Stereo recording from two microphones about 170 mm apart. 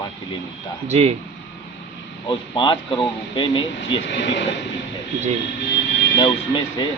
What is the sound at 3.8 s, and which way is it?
Speech, 90° left.